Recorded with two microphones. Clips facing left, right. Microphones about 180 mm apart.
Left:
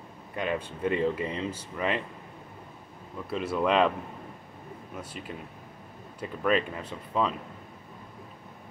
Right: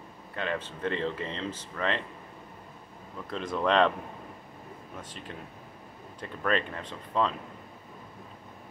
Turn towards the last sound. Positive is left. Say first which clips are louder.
# even
turn(degrees=10)  # may be behind; listen again after turning